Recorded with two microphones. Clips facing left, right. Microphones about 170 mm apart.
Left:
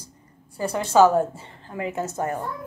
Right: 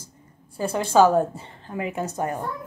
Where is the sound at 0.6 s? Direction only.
10° right (ahead or behind).